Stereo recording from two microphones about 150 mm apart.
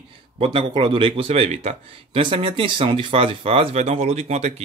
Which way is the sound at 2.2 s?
35° right (ahead or behind).